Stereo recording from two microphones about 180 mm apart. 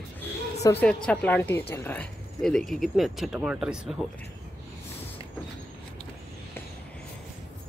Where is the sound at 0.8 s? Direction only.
5° left (ahead or behind).